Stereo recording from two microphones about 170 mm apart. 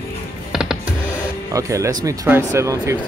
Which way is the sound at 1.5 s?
20° right (ahead or behind).